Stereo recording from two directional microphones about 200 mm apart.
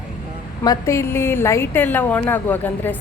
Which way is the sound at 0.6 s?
15° left (ahead or behind).